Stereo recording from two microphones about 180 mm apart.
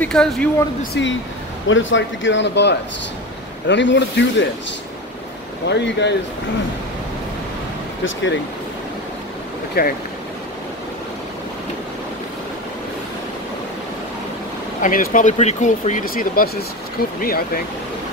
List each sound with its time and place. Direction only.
0.0 s speech: 5° left (ahead or behind)
1.0 s speech: 75° left (ahead or behind)
1.7 s speech: 90° left; by 2.7 s 75° left (ahead or behind)
3.6 s speech: 85° left
5.7 s speech: 75° left (ahead or behind)
8.0 s speech: 90° left
9.8 s speech: 60° left (ahead or behind)
14.8 s speech: 50° left (ahead or behind)